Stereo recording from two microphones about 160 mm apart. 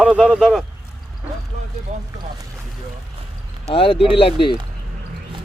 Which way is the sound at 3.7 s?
35° left (ahead or behind).